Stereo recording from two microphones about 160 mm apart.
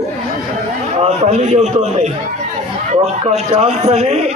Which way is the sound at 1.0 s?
40° right (ahead or behind).